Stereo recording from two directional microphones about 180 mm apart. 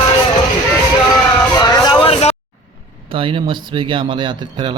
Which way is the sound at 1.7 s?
25° left (ahead or behind).